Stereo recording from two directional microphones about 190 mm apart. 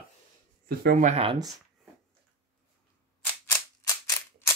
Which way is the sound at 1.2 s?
25° right (ahead or behind).